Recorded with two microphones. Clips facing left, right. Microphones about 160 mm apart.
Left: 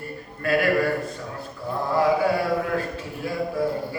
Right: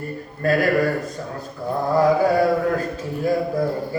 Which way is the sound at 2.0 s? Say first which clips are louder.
Right 4 dB; 40° right (ahead or behind).